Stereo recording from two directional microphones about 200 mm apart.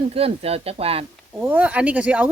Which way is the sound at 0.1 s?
30° right (ahead or behind).